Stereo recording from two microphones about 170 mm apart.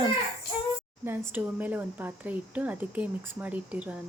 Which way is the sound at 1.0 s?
10° right (ahead or behind).